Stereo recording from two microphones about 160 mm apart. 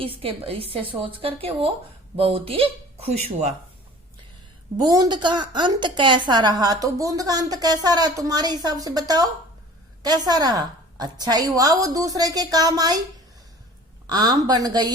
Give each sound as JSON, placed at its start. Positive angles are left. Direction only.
{"t": 0.0, "sound": "speech", "side_deg": -35}
{"t": 4.8, "sound": "a woman's voice", "side_deg": -25}
{"t": 14.1, "sound": "a woman's voice", "side_deg": -25}